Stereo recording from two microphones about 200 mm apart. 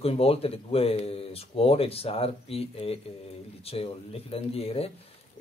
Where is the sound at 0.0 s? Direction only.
30° left (ahead or behind).